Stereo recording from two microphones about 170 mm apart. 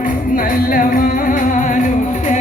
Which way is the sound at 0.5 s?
55° left (ahead or behind).